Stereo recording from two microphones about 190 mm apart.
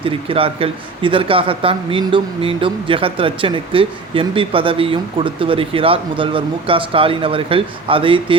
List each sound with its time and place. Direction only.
0.0 s speech: 30° right (ahead or behind)